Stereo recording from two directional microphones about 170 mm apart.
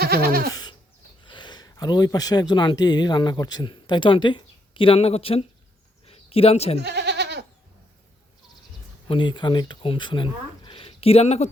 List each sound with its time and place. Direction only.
0.0 s goat: 65° right (ahead or behind)
0.5 s goat: 25° left (ahead or behind)
1.3 s speech: 25° left (ahead or behind)
6.1 s a sound: 35° left (ahead or behind)
6.7 s goat: 80° right
9.0 s speech: 30° left (ahead or behind)